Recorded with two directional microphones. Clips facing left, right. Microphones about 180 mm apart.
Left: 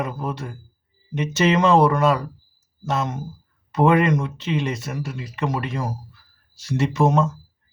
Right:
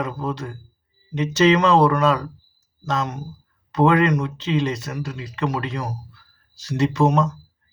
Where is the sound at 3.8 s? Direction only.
20° left (ahead or behind).